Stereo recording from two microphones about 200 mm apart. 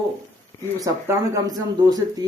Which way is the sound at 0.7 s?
15° right (ahead or behind).